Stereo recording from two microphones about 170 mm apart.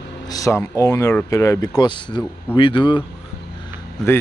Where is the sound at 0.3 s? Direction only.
20° left (ahead or behind).